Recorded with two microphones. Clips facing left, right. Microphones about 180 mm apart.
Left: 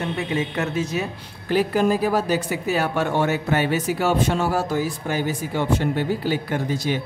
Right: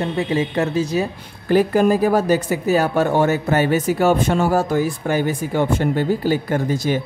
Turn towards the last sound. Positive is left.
turn(degrees=-45)  # may be behind; listen again after turning